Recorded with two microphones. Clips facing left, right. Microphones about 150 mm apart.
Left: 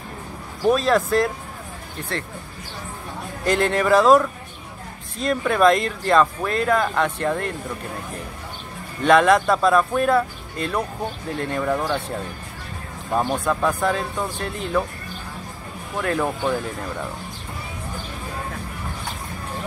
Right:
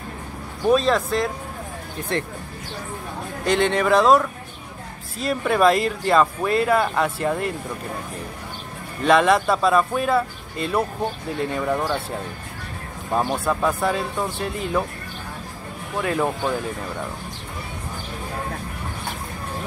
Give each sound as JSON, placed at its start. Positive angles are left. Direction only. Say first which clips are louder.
{"t": 0.7, "sound": "speech", "louder": "even", "side_deg": 0}
{"t": 2.1, "sound": "speech", "louder": "right 4 dB", "side_deg": -20}
{"t": 3.4, "sound": "speech", "louder": "even", "side_deg": 0}
{"t": 9.0, "sound": "speech", "louder": "left 1 dB", "side_deg": 0}
{"t": 13.1, "sound": "speech", "louder": "even", "side_deg": 0}
{"t": 16.0, "sound": "speech", "louder": "even", "side_deg": -5}